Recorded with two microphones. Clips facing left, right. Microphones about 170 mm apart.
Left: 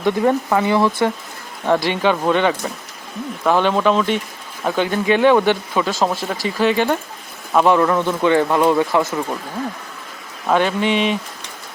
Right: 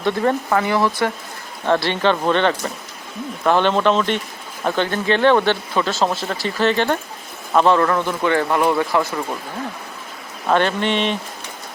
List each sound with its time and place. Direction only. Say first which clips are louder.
0.0 s speech: left 2 dB; 10° left (ahead or behind)
10.5 s speech: left 1 dB; 5° left (ahead or behind)